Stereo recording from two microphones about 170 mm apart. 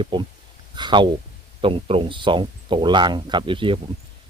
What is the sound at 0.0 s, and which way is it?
Speech, 30° right (ahead or behind).